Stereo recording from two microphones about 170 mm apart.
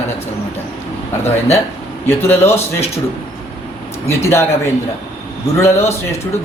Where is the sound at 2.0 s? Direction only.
15° left (ahead or behind).